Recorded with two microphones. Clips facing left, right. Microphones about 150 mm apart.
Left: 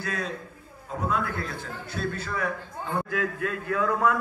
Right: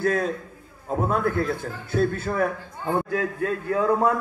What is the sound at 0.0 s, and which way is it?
A man's voice, 50° right (ahead or behind).